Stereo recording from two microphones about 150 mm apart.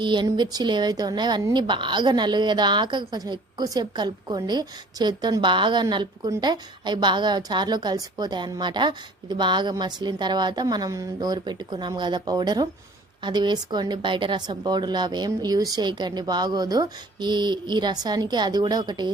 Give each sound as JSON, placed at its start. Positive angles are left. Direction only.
{"t": 0.0, "sound": "a woman's voice", "side_deg": -30}